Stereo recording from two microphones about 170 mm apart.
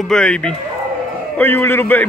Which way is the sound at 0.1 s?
5° left (ahead or behind).